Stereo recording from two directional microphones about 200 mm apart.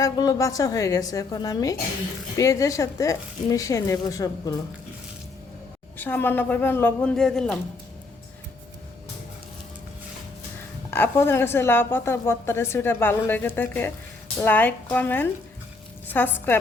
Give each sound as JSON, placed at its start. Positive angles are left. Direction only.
{"t": 0.0, "sound": "a woman's voice", "side_deg": 15}
{"t": 6.0, "sound": "a woman's voice", "side_deg": 10}
{"t": 10.9, "sound": "a woman's voice", "side_deg": 10}